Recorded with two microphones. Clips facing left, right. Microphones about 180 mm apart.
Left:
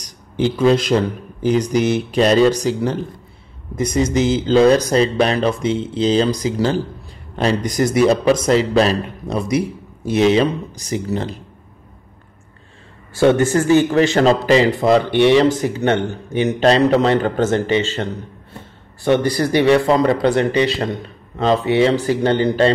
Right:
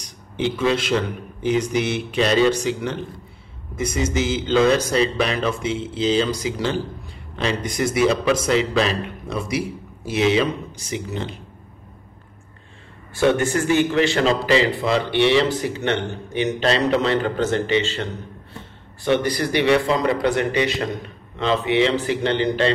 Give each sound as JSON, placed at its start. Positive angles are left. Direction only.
{"t": 0.0, "sound": "a man's voice", "side_deg": 40}
{"t": 13.6, "sound": "a man's voice", "side_deg": 40}
{"t": 19.3, "sound": "a man's voice", "side_deg": 40}